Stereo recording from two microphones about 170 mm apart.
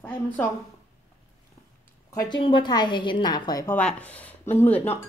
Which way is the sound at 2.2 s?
25° left (ahead or behind).